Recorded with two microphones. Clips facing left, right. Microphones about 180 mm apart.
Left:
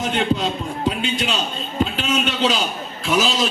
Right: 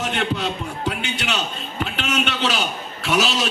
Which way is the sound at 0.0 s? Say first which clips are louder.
Left 3 dB; 70° right (ahead or behind).